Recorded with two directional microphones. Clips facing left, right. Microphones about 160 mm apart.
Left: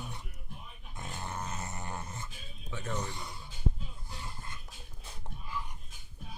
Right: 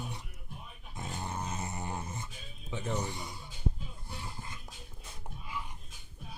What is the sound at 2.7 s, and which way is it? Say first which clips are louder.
Speech: right 2 dB; 15° right (ahead or behind).